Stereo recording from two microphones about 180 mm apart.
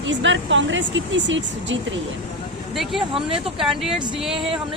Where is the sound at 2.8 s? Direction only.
Centre (ahead or behind).